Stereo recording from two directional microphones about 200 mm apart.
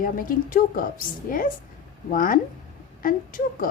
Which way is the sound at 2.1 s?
45° left (ahead or behind).